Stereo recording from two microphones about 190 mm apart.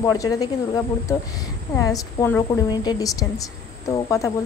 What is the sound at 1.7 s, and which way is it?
A woman's voice, 15° left (ahead or behind).